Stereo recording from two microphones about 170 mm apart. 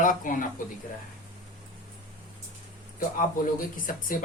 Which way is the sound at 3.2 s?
55° left (ahead or behind).